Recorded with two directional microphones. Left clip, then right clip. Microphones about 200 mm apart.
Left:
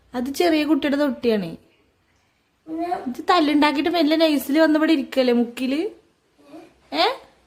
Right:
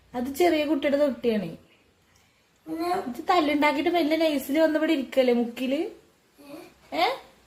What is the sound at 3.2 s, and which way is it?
A woman's voice, 40° left (ahead or behind).